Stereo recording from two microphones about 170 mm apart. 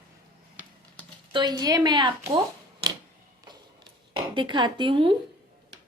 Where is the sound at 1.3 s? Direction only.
25° right (ahead or behind).